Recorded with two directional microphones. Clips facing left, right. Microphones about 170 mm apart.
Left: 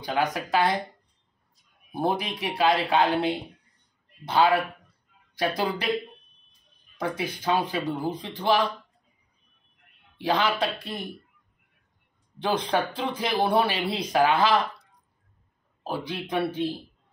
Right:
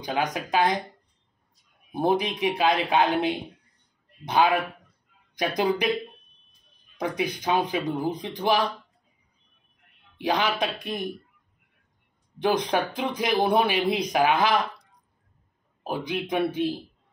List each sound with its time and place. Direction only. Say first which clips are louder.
0.0 s speech: left 1 dB; 20° right (ahead or behind)
2.0 s speech: right 3 dB; 20° right (ahead or behind)
7.0 s speech: right 2 dB; 15° right (ahead or behind)
10.1 s speech: even; 15° right (ahead or behind)
12.4 s speech: right 2 dB; 15° right (ahead or behind)
15.8 s speech: right 2 dB; 15° right (ahead or behind)